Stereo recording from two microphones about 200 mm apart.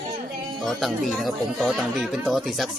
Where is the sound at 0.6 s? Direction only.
Centre (ahead or behind).